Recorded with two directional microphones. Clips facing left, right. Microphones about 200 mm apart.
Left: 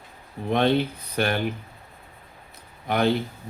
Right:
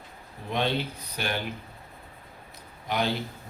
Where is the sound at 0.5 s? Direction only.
55° left (ahead or behind).